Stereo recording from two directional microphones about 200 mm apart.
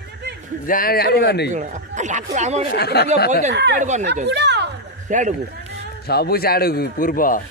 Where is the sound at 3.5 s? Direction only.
60° right (ahead or behind).